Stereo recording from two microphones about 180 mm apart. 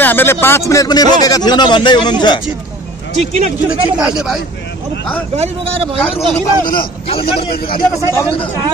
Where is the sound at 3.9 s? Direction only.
5° right (ahead or behind).